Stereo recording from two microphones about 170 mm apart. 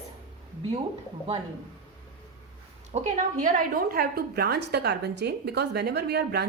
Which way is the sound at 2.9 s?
45° right (ahead or behind).